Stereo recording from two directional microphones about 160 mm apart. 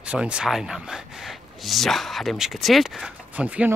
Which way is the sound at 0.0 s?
5° right (ahead or behind).